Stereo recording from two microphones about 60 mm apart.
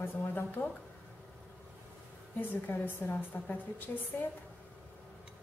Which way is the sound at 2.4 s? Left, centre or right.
Left.